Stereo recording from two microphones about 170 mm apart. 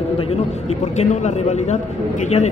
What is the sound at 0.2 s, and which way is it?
A man's voice, 40° left (ahead or behind).